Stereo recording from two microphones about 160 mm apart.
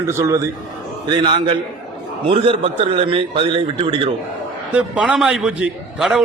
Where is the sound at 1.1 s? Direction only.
30° right (ahead or behind).